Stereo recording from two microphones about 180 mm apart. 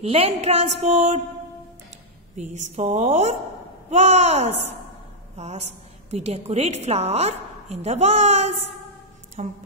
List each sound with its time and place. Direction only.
0.0 s a woman's voice: 35° right (ahead or behind)
2.3 s a woman's voice: 40° right (ahead or behind)